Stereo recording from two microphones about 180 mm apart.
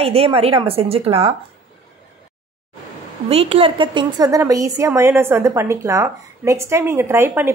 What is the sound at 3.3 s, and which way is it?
A woman's voice, 35° right (ahead or behind).